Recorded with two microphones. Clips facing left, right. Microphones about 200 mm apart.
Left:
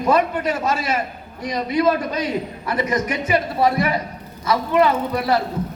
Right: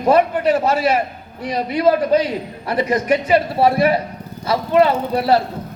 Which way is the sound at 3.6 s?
30° right (ahead or behind).